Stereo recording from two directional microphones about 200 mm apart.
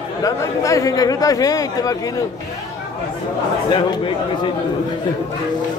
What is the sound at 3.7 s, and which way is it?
Speech, 25° left (ahead or behind).